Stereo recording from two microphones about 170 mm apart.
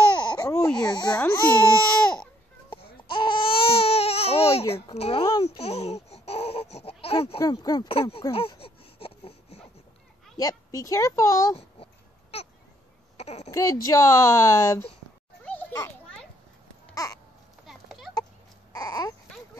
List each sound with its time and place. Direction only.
0.2 s baby cry: 25° left (ahead or behind)
0.8 s speech: 25° left (ahead or behind)
1.1 s speech: 10° left (ahead or behind)
2.7 s baby cry: 30° left (ahead or behind)
4.9 s babbling: 35° left (ahead or behind)
7.3 s speech: 20° left (ahead or behind)
8.3 s a sound: 35° left (ahead or behind)
10.3 s speech: 20° left (ahead or behind)
11.5 s a sound: 35° left (ahead or behind)
13.2 s speech: 40° left (ahead or behind)
13.5 s speech: 20° left (ahead or behind)
16.9 s a sound: 20° left (ahead or behind)
17.6 s clip-clop: centre (ahead or behind)
18.7 s baby cry: 20° left (ahead or behind)